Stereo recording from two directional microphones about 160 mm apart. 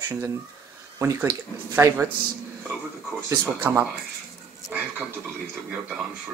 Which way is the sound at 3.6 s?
15° right (ahead or behind).